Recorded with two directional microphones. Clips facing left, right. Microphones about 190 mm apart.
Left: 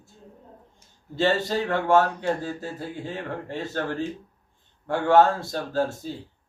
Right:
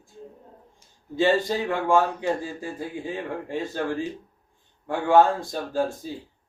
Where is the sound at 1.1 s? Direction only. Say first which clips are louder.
Right 1 dB; 15° right (ahead or behind).